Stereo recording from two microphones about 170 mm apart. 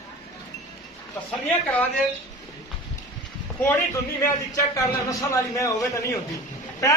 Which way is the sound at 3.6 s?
15° left (ahead or behind).